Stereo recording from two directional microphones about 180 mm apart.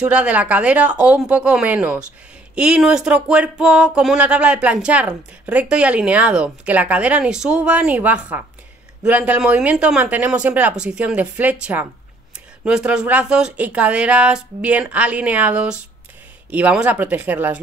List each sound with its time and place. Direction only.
0.0 s speech: 5° right (ahead or behind)